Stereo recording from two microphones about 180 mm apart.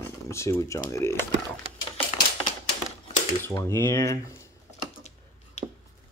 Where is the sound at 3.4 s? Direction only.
15° left (ahead or behind).